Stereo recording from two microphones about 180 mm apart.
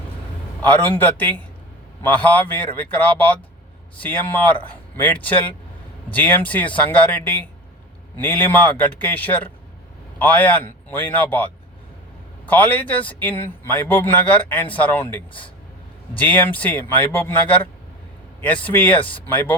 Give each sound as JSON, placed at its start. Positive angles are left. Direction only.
{"t": 0.6, "sound": "speech", "side_deg": 10}
{"t": 8.2, "sound": "speech", "side_deg": 10}
{"t": 18.9, "sound": "speech", "side_deg": 30}